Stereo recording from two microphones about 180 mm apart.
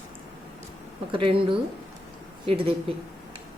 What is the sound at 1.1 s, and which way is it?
A woman's voice, 30° right (ahead or behind).